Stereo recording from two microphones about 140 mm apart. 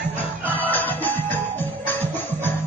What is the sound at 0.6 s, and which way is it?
Music, 10° left (ahead or behind).